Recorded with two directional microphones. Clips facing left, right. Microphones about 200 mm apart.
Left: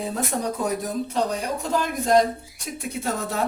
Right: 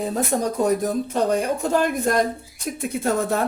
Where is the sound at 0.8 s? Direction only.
55° right (ahead or behind).